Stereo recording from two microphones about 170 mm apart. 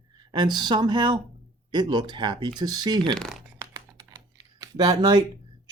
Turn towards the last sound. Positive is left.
turn(degrees=-20)  # may be behind; listen again after turning